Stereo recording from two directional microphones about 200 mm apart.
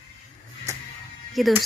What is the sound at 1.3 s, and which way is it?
Speech, centre (ahead or behind).